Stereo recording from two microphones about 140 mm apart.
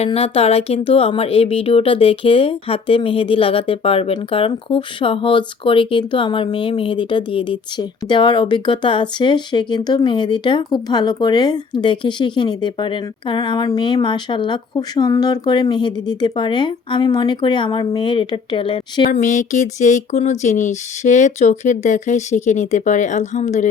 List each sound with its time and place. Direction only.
0.0 s speech: 45° left (ahead or behind)
19.2 s speech: 60° left (ahead or behind)